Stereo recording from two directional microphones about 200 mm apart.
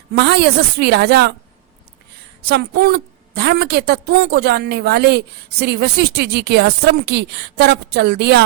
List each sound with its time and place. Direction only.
0.2 s a woman's voice: 55° right (ahead or behind)
2.4 s a woman's voice: 50° right (ahead or behind)